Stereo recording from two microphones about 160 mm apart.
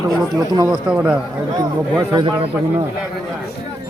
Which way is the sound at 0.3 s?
25° right (ahead or behind).